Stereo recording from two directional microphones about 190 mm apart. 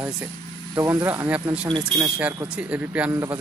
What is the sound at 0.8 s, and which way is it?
Speech, 20° right (ahead or behind).